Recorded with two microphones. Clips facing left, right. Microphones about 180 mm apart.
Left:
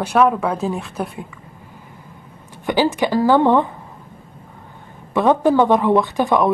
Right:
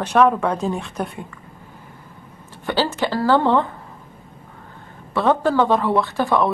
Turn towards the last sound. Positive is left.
turn(degrees=15)  # may be behind; listen again after turning